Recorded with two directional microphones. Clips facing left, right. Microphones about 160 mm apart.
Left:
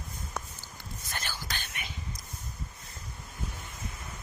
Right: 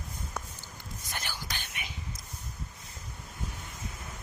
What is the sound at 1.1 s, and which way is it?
Whispering, 15° right (ahead or behind).